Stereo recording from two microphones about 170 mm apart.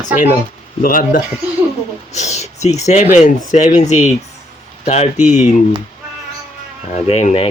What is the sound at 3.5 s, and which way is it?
Speech, 45° left (ahead or behind).